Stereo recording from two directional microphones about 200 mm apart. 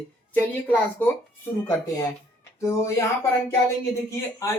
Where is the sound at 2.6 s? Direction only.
15° left (ahead or behind).